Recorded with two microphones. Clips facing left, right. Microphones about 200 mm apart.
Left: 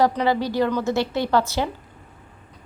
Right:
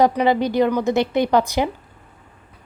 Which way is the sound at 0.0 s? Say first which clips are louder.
Right 3 dB; 15° right (ahead or behind).